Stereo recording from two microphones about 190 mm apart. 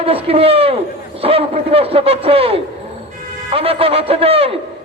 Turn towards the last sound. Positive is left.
turn(degrees=-30)  # may be behind; listen again after turning